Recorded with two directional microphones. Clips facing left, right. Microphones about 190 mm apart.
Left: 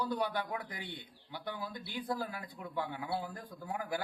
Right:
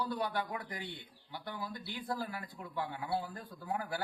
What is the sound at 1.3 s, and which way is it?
Speech, 15° left (ahead or behind).